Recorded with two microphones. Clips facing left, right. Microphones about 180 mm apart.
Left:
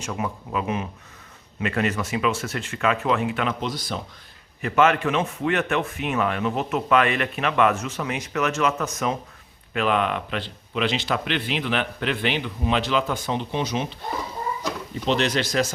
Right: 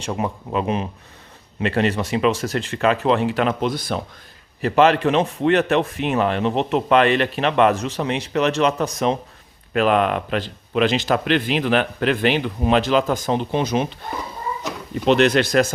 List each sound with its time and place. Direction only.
0.0 s a man's voice: 30° right (ahead or behind)
3.6 s speech: 55° right (ahead or behind)
4.6 s a man's voice: 35° right (ahead or behind); by 13.8 s 50° right (ahead or behind)
15.0 s speech: 60° right (ahead or behind)